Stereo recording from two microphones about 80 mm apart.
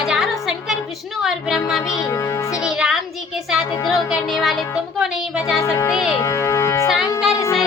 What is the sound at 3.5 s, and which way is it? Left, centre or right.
Child singing, centre.